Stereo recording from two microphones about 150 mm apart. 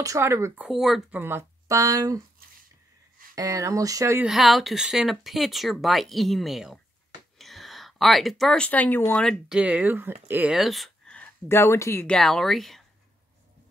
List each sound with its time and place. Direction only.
0.0 s speech: 20° right (ahead or behind)
0.7 s speech: centre (ahead or behind)
1.2 s speech: 20° right (ahead or behind)
3.3 s speech: 20° right (ahead or behind)
4.2 s speech: centre (ahead or behind)
9.6 s speech: 10° right (ahead or behind)
10.5 s a sound: centre (ahead or behind)
11.4 s speech: 15° left (ahead or behind)
12.2 s speech: centre (ahead or behind)